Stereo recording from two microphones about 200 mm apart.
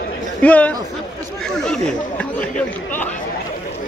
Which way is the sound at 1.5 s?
5° left (ahead or behind).